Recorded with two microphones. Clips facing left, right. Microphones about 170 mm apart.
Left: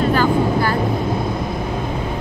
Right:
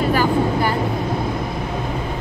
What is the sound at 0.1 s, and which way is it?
Vehicle, 15° right (ahead or behind).